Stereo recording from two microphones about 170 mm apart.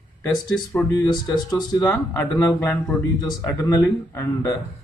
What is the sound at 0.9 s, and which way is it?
Speech, 25° left (ahead or behind).